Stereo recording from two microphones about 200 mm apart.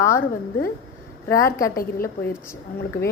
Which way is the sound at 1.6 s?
45° left (ahead or behind).